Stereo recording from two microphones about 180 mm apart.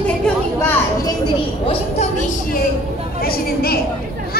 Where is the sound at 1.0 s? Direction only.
25° left (ahead or behind).